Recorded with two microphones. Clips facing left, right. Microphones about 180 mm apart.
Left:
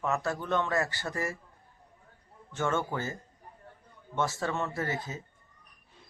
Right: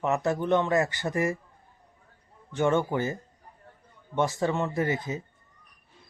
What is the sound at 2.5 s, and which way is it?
Speech, 15° right (ahead or behind).